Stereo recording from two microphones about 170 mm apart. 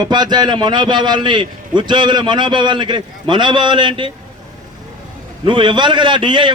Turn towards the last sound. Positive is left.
turn(degrees=-30)  # may be behind; listen again after turning